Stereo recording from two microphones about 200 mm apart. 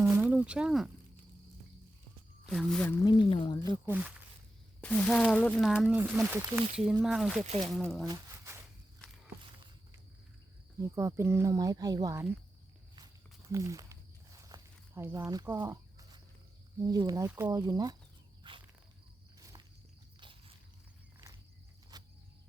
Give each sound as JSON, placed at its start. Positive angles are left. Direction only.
{"t": 0.0, "sound": "a sound", "side_deg": -10}
{"t": 2.5, "sound": "speech", "side_deg": 5}
{"t": 3.8, "sound": "speech", "side_deg": -10}
{"t": 4.8, "sound": "speech", "side_deg": 5}
{"t": 8.0, "sound": "a sound", "side_deg": -15}
{"t": 10.8, "sound": "speech", "side_deg": -15}
{"t": 13.5, "sound": "walk", "side_deg": -15}
{"t": 16.8, "sound": "speech", "side_deg": -20}
{"t": 18.4, "sound": "walk", "side_deg": -25}
{"t": 21.9, "sound": "a sound", "side_deg": -20}